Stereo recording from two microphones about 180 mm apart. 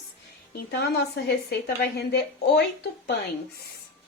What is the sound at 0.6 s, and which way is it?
A woman's voice, 65° left (ahead or behind).